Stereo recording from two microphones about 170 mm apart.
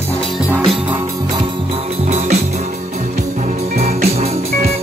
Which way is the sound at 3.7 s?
40° right (ahead or behind).